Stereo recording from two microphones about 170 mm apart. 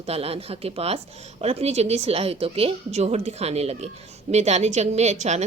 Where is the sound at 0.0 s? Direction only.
35° right (ahead or behind).